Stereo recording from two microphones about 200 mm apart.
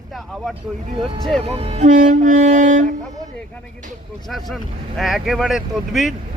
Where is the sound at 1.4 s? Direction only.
30° right (ahead or behind).